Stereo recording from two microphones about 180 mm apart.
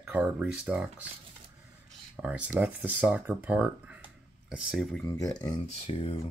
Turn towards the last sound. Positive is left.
turn(degrees=30)  # may be behind; listen again after turning